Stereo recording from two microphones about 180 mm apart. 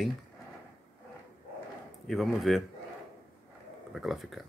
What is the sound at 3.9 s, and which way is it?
Speech, centre (ahead or behind).